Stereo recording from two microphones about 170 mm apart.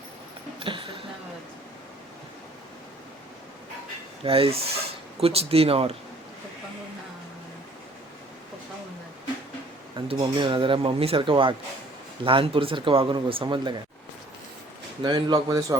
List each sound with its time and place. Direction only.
0.6 s speech: 30° right (ahead or behind)
4.2 s speech: 35° right (ahead or behind)
9.9 s speech: 30° right (ahead or behind)
15.0 s speech: 25° right (ahead or behind)